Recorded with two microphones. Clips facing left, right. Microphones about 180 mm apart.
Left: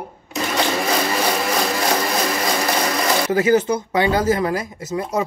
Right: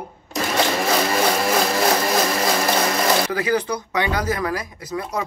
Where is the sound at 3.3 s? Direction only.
25° left (ahead or behind).